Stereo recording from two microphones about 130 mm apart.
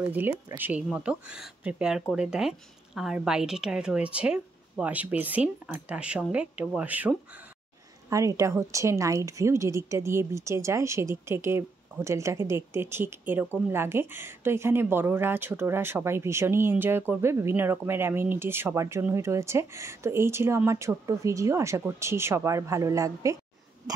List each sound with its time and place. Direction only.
0.0 s speech: 15° right (ahead or behind)
8.1 s a woman's voice: 25° right (ahead or behind)